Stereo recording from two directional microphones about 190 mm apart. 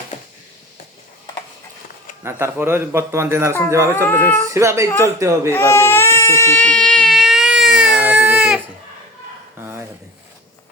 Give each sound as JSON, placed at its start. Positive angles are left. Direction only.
{"t": 2.2, "sound": "a man's voice", "side_deg": -15}
{"t": 3.9, "sound": "speech", "side_deg": 10}
{"t": 4.5, "sound": "a man's voice", "side_deg": -15}
{"t": 5.5, "sound": "baby cry", "side_deg": 10}
{"t": 9.6, "sound": "dog", "side_deg": -10}